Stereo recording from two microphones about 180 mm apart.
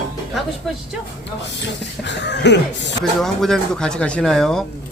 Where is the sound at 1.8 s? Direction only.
75° left (ahead or behind).